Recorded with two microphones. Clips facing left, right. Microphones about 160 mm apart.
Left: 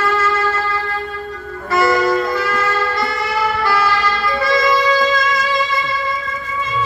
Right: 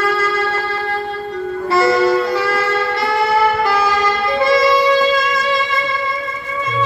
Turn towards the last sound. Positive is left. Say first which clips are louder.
# right 3 dB
turn(degrees=-25)  # may be behind; listen again after turning